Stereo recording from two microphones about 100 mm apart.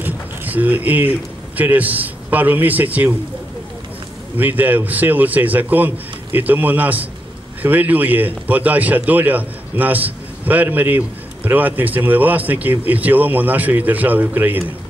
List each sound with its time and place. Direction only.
0.0 s a sound: 20° right (ahead or behind)
1.6 s a man's voice: 15° right (ahead or behind)
4.4 s a man's voice: 15° right (ahead or behind)